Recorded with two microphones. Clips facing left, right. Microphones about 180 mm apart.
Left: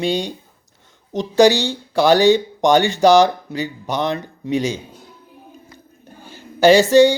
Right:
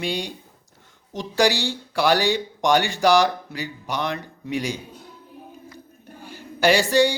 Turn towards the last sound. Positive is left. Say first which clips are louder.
# left 7 dB
turn(degrees=25)  # may be behind; listen again after turning